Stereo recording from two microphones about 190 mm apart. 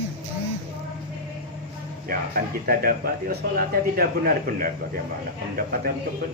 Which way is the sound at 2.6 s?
50° right (ahead or behind).